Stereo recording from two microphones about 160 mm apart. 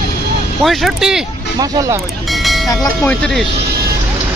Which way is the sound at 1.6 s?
20° right (ahead or behind).